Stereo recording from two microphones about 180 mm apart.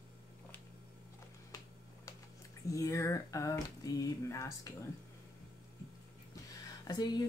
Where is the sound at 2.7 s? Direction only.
15° left (ahead or behind).